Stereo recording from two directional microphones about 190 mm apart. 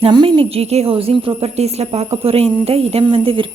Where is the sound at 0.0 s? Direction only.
25° right (ahead or behind).